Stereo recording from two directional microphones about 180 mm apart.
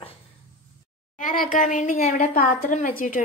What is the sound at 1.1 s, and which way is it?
A woman's voice, 50° left (ahead or behind).